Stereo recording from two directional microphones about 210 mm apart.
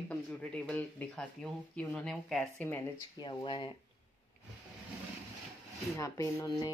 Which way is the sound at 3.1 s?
20° left (ahead or behind).